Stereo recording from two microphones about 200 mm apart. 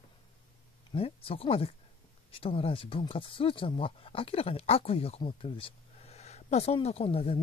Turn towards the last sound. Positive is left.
turn(degrees=30)  # may be behind; listen again after turning